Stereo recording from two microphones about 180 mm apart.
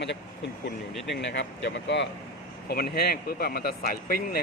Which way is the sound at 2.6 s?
60° left (ahead or behind).